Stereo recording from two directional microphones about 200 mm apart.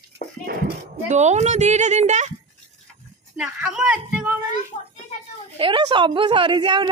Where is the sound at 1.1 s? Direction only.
35° right (ahead or behind).